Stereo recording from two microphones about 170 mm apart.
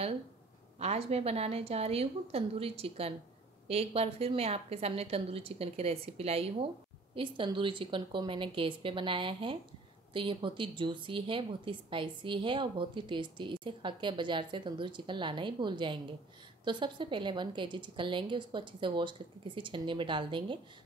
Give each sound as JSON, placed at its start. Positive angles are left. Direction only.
{"t": 0.7, "sound": "a woman's voice", "side_deg": -40}